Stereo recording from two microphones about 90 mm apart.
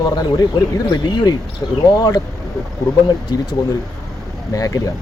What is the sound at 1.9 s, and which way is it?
Speech, 45° left (ahead or behind).